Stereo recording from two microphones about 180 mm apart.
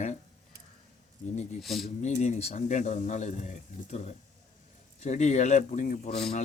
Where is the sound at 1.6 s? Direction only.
Centre (ahead or behind).